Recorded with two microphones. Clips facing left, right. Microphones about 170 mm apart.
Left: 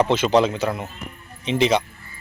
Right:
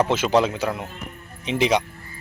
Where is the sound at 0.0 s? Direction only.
10° right (ahead or behind).